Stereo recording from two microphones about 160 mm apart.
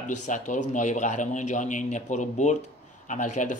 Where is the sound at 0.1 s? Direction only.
50° left (ahead or behind).